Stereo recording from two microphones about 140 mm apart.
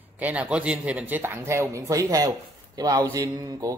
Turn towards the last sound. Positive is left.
turn(degrees=-25)  # may be behind; listen again after turning